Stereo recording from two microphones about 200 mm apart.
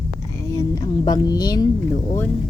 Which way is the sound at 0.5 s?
15° left (ahead or behind).